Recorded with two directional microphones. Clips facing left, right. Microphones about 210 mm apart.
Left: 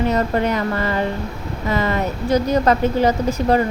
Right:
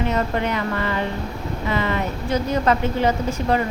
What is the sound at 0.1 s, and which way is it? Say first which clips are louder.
A woman's voice: left 4 dB; 40° left (ahead or behind).